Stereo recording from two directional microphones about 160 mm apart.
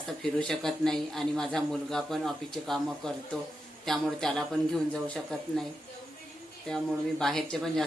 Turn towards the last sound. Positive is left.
turn(degrees=5)  # may be behind; listen again after turning